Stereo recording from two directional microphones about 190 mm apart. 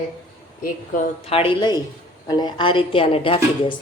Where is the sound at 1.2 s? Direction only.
30° left (ahead or behind).